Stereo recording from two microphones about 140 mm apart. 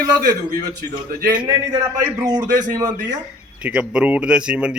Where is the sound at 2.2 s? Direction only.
25° right (ahead or behind).